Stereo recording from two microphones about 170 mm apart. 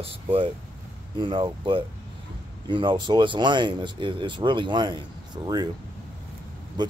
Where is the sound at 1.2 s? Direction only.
30° right (ahead or behind).